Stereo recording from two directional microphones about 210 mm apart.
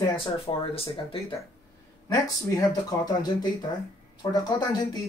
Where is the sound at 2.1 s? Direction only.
15° left (ahead or behind).